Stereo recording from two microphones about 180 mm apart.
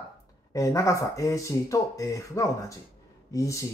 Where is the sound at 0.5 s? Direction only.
15° left (ahead or behind).